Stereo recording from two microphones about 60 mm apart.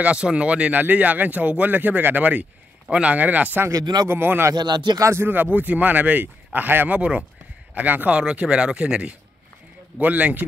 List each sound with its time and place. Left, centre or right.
0.0 s speech: centre
3.7 s speech: right
4.1 s speech: right
4.5 s speech: right
5.2 s speech: right
7.0 s speech: right
8.2 s speech: centre